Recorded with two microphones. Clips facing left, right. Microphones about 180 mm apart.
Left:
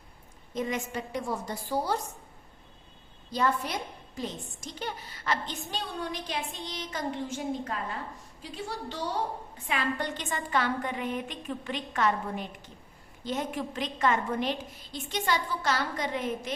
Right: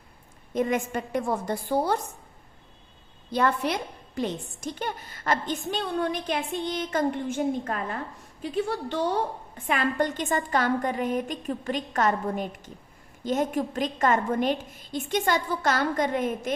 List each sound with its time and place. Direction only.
0.5 s a woman's voice: 55° right (ahead or behind)
3.3 s a woman's voice: 65° right (ahead or behind); by 16.5 s 50° right (ahead or behind)